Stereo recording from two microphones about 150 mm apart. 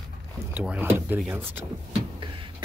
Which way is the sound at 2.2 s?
30° right (ahead or behind).